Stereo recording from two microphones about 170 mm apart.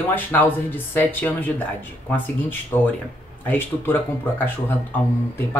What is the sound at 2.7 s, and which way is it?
Speech, 15° left (ahead or behind).